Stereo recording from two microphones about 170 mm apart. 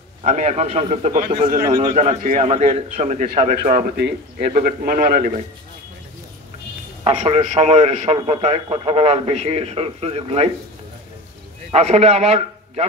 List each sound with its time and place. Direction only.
0.2 s a man's voice: 40° right (ahead or behind)
1.6 s a man's voice: 20° right (ahead or behind)
1.9 s a man's voice: 40° right (ahead or behind)
3.3 s a man's voice: 55° right (ahead or behind)
4.4 s a man's voice: 45° right (ahead or behind); by 5.4 s 60° right (ahead or behind)
7.1 s a man's voice: 40° right (ahead or behind)
11.7 s a man's voice: 40° right (ahead or behind)